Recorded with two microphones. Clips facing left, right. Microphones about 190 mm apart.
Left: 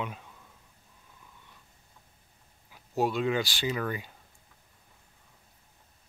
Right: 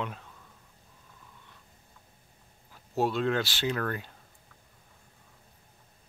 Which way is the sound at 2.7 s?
Centre (ahead or behind).